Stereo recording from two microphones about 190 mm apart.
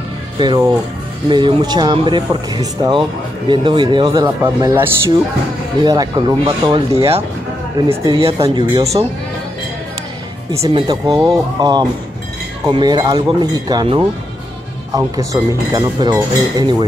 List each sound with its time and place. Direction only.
0.4 s speech: 20° right (ahead or behind)
10.5 s speech: 20° right (ahead or behind)